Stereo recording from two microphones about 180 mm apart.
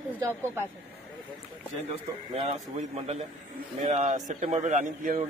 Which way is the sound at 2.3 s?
35° right (ahead or behind).